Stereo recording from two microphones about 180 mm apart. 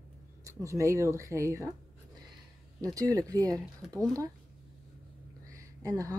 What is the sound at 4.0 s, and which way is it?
Speech, 20° right (ahead or behind).